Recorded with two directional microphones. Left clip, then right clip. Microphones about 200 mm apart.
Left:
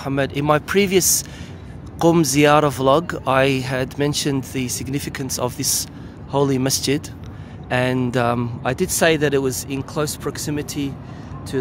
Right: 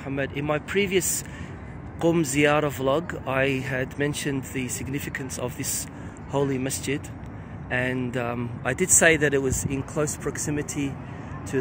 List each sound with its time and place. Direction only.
0.0 s speech: 20° left (ahead or behind)
8.6 s speech: 5° left (ahead or behind)